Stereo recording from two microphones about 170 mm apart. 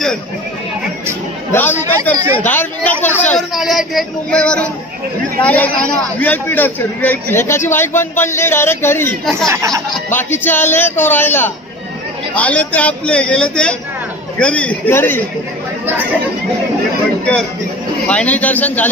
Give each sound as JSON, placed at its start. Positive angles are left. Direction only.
{"t": 1.5, "sound": "a man's voice", "side_deg": 15}
{"t": 2.1, "sound": "a sound", "side_deg": 10}
{"t": 3.3, "sound": "a sound", "side_deg": 0}
{"t": 5.4, "sound": "a man's voice", "side_deg": 10}
{"t": 9.5, "sound": "speech", "side_deg": -20}
{"t": 10.0, "sound": "a man's voice", "side_deg": 15}
{"t": 18.0, "sound": "a man's voice", "side_deg": 10}